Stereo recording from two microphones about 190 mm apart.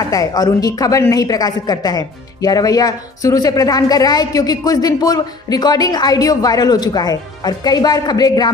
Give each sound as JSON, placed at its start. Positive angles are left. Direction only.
{"t": 0.1, "sound": "a woman's voice", "side_deg": 20}